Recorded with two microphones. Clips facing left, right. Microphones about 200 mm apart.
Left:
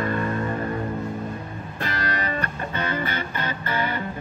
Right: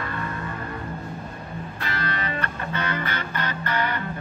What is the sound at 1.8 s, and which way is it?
Music, 45° left (ahead or behind).